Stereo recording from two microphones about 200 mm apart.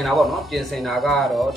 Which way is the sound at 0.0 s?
Centre (ahead or behind).